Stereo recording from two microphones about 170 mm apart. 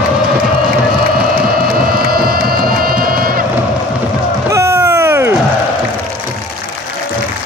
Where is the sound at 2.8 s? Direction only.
60° right (ahead or behind).